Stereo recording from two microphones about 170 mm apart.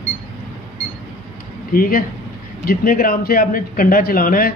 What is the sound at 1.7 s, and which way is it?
Speech, 60° left (ahead or behind).